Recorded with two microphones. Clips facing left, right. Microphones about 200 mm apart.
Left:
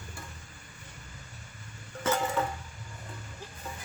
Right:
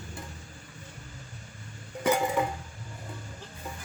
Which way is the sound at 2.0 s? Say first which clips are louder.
Right 3 dB; 15° right (ahead or behind).